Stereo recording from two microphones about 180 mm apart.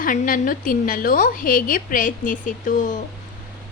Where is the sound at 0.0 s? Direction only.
50° left (ahead or behind).